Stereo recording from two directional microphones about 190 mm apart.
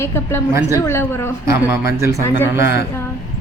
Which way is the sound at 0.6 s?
15° right (ahead or behind).